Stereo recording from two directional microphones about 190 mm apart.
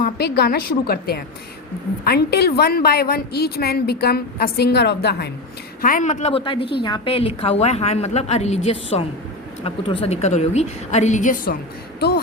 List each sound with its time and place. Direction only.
0.0 s a woman's voice: 60° left (ahead or behind)
5.8 s a woman's voice: 45° left (ahead or behind)
11.9 s speech: 55° left (ahead or behind)